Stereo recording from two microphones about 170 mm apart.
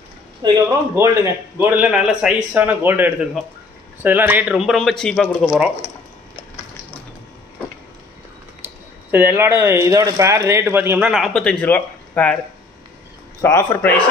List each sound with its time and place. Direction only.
0.4 s a man's voice: 25° right (ahead or behind); by 5.7 s centre (ahead or behind)
9.1 s speech: 10° right (ahead or behind); by 12.4 s 10° left (ahead or behind)
13.4 s speech: 15° left (ahead or behind)